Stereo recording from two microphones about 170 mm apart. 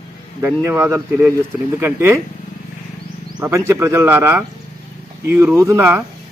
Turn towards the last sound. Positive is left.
turn(degrees=-15)  # may be behind; listen again after turning